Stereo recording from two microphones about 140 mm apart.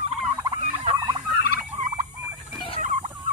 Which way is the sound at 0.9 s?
35° right (ahead or behind).